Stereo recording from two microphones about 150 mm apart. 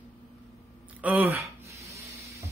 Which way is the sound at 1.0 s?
10° right (ahead or behind).